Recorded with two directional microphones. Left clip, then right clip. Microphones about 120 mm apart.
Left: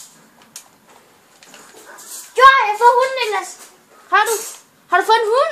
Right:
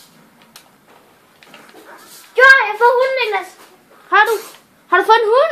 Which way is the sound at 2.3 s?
15° left (ahead or behind).